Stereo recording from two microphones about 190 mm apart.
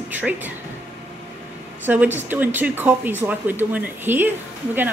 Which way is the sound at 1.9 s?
10° right (ahead or behind).